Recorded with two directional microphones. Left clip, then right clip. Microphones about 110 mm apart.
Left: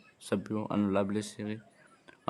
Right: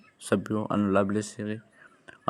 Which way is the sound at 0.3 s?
35° right (ahead or behind).